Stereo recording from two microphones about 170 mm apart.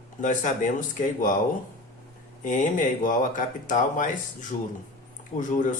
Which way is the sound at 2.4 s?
50° left (ahead or behind).